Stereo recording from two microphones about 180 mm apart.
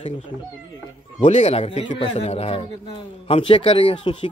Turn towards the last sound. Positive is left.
turn(degrees=30)  # may be behind; listen again after turning